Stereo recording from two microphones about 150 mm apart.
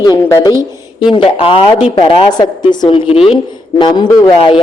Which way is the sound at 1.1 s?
40° left (ahead or behind).